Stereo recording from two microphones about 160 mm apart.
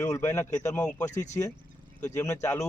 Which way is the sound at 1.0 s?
50° left (ahead or behind).